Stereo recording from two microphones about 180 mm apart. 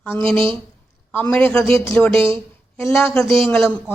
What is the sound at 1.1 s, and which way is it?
A man's voice, 10° left (ahead or behind).